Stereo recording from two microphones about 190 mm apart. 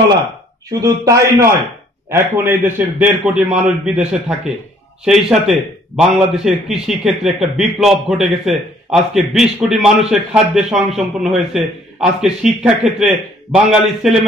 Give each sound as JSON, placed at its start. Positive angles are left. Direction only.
{"t": 0.7, "sound": "a man's voice", "side_deg": -20}